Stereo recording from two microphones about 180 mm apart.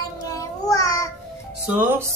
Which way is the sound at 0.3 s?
20° left (ahead or behind).